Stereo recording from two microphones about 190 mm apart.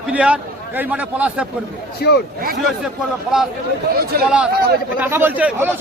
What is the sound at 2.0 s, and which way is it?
Speech, 55° left (ahead or behind).